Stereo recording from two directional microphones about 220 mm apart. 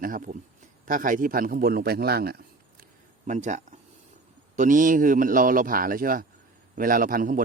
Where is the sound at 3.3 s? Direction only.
35° right (ahead or behind).